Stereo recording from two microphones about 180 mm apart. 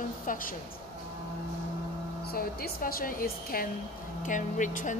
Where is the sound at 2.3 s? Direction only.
55° left (ahead or behind).